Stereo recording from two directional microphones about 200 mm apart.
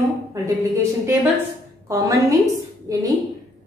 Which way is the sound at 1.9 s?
15° right (ahead or behind).